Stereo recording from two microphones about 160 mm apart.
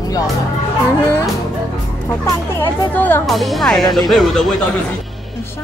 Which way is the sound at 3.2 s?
Centre (ahead or behind).